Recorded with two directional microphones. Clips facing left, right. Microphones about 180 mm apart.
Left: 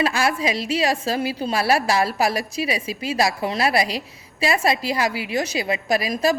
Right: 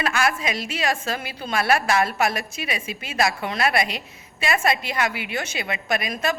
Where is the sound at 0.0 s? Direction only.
30° left (ahead or behind).